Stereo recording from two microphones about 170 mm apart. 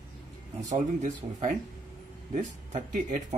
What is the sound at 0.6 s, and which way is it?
Speech, 45° right (ahead or behind).